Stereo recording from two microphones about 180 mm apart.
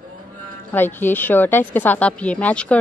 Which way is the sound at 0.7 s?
10° left (ahead or behind).